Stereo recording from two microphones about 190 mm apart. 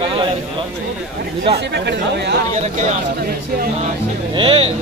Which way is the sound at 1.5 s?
60° right (ahead or behind).